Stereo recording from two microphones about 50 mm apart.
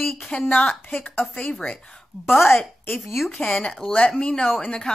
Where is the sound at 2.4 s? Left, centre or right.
Left.